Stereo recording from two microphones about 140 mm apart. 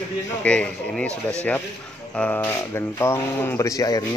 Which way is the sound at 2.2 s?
10° left (ahead or behind).